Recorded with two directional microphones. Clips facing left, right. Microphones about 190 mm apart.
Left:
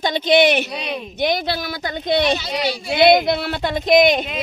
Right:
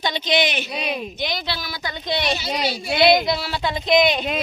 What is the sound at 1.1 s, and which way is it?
A woman's voice, 55° left (ahead or behind).